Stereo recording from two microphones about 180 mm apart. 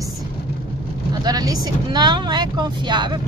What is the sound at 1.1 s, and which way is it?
Speech, 20° right (ahead or behind).